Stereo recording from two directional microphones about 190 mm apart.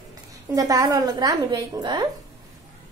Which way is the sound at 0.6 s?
20° right (ahead or behind).